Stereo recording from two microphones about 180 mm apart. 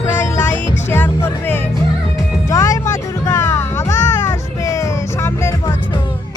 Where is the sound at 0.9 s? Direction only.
10° left (ahead or behind).